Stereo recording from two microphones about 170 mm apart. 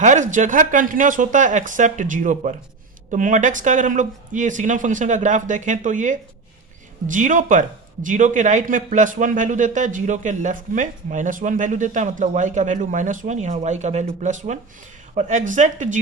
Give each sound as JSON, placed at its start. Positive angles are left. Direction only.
{"t": 0.0, "sound": "a man's voice", "side_deg": -45}